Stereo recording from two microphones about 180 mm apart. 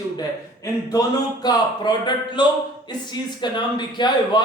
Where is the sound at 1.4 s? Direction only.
25° left (ahead or behind).